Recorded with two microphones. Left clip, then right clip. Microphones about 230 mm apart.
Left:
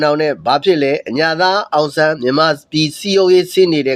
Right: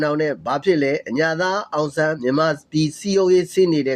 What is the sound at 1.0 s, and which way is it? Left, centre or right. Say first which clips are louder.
Speech: left 6 dB; centre.